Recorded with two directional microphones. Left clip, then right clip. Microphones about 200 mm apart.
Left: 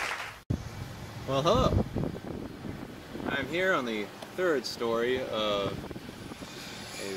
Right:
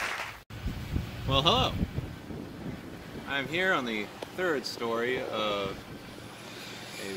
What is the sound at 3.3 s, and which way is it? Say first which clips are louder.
Speech: even; 10° right (ahead or behind).